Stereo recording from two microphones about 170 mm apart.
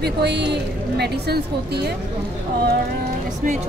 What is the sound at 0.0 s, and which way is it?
A woman's voice, 80° right.